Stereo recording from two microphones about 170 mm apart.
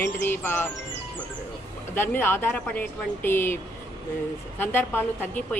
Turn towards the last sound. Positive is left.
turn(degrees=10)  # may be behind; listen again after turning